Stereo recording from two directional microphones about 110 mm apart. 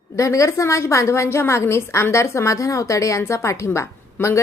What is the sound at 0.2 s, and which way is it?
A woman's voice, 30° left (ahead or behind).